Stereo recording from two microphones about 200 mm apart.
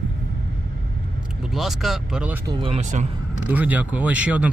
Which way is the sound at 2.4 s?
25° right (ahead or behind).